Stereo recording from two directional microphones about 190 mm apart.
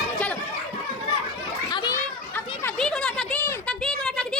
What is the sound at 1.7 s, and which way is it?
Children playing, 25° left (ahead or behind).